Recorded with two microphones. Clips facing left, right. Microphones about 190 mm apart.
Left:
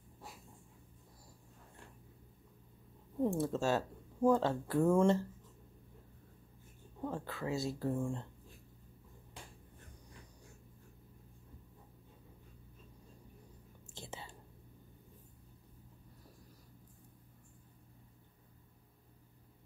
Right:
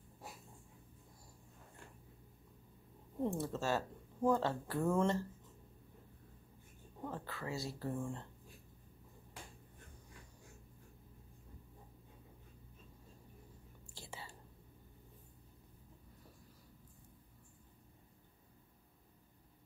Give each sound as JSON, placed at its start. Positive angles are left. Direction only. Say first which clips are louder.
{"t": 3.3, "sound": "speech", "louder": "left 4 dB", "side_deg": 15}
{"t": 7.1, "sound": "speech", "louder": "left 5 dB", "side_deg": 15}
{"t": 13.9, "sound": "whispering", "louder": "left 3 dB", "side_deg": 20}